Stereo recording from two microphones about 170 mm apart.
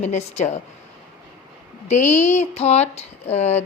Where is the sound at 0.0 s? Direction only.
40° left (ahead or behind).